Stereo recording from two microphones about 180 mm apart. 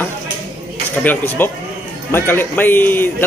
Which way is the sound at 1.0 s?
10° left (ahead or behind).